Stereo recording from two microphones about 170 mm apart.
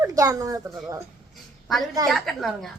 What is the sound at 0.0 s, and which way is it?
A woman's voice, 20° right (ahead or behind).